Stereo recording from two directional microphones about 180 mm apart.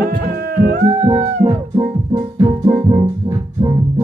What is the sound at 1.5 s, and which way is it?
Music, 20° right (ahead or behind).